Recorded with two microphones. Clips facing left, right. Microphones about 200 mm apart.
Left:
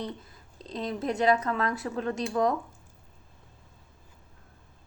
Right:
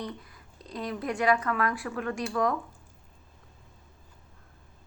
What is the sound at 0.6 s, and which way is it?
A woman's voice, 25° left (ahead or behind).